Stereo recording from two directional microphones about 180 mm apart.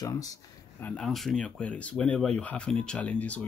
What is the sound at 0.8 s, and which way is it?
Speech, 5° left (ahead or behind).